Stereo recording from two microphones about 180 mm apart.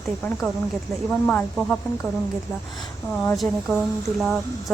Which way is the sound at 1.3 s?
5° left (ahead or behind).